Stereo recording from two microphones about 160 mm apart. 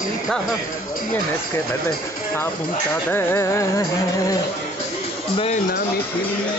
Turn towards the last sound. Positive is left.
turn(degrees=40)  # may be behind; listen again after turning